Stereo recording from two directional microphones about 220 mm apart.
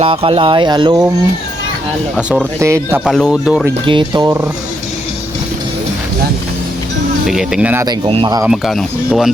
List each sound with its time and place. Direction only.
0.0 s speech: 25° right (ahead or behind)
2.1 s speech: 5° right (ahead or behind)
3.0 s speech: centre (ahead or behind)
3.8 s speech: 20° right (ahead or behind)
7.3 s speech: centre (ahead or behind)
8.0 s speech: 25° right (ahead or behind)
8.4 s speech: centre (ahead or behind)